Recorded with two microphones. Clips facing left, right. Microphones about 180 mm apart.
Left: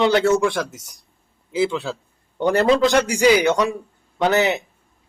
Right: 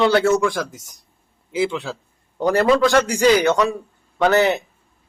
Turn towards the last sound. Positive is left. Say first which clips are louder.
# right 2 dB
turn(degrees=15)  # may be behind; listen again after turning